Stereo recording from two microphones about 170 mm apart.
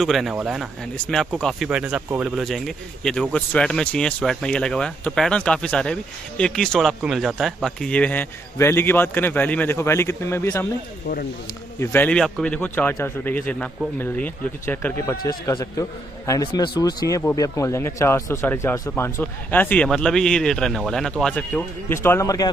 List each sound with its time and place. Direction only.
0.0 s speech: centre (ahead or behind); by 10.7 s 15° left (ahead or behind)
11.8 s speech: 10° left (ahead or behind)